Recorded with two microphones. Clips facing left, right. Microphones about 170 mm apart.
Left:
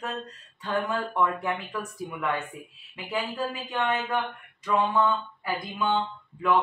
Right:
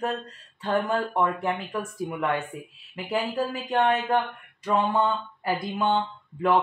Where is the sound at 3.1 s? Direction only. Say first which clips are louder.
Right 3 dB; 40° right (ahead or behind).